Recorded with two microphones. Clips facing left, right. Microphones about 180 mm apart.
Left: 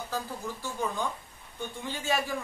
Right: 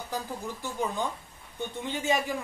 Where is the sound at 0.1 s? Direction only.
20° right (ahead or behind).